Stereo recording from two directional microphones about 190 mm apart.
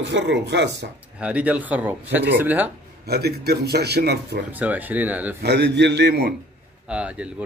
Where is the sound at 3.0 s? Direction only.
55° right (ahead or behind).